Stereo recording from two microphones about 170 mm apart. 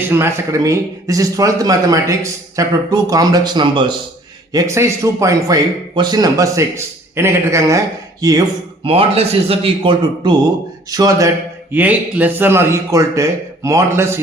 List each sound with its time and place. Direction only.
0.1 s speech: 15° right (ahead or behind)
8.8 s speech: 35° right (ahead or behind)
11.7 s speech: 10° right (ahead or behind)